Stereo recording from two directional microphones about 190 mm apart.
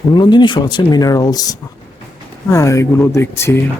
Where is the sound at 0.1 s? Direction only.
25° left (ahead or behind).